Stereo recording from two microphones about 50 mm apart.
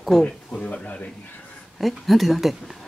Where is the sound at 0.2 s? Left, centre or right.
Centre.